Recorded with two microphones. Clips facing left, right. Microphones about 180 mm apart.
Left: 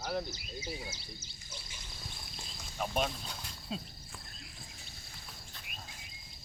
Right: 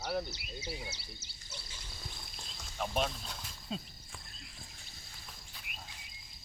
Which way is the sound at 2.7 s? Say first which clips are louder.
Left 1 dB; centre (ahead or behind).